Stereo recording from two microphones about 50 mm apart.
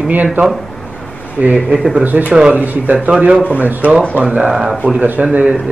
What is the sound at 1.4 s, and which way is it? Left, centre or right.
A man's voice, right.